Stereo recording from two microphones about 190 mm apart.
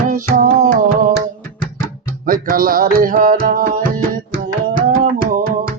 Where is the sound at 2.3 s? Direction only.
50° right (ahead or behind).